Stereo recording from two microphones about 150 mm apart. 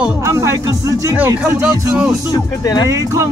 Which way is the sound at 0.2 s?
20° right (ahead or behind).